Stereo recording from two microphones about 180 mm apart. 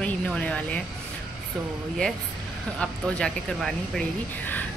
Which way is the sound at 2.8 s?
5° left (ahead or behind).